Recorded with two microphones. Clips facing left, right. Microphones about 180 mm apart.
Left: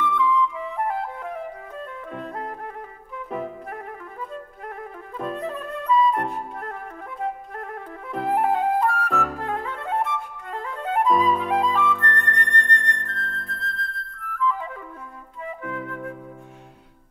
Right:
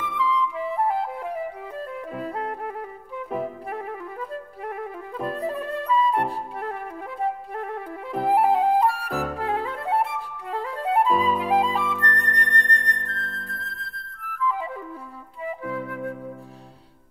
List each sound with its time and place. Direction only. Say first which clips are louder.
0.0 s music: left 3 dB; 35° right (ahead or behind)
2.1 s music: right 2 dB; 5° right (ahead or behind)
4.6 s music: right 6 dB; 10° right (ahead or behind)
5.3 s flute: right 3 dB; 35° right (ahead or behind)
8.1 s music: right 2 dB; 35° right (ahead or behind)
8.5 s flute: right 2 dB; 30° right (ahead or behind)
15.6 s flute: right 1 dB; 35° right (ahead or behind)